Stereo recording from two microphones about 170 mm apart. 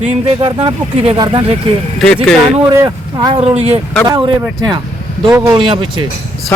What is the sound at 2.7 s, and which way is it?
Speech, 25° right (ahead or behind).